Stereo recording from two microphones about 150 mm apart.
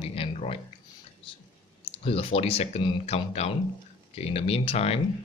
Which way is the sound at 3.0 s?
45° left (ahead or behind).